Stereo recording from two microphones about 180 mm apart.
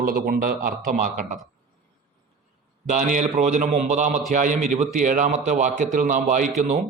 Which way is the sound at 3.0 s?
45° right (ahead or behind).